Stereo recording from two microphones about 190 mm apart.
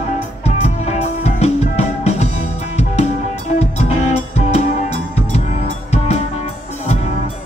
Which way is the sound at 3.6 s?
35° left (ahead or behind).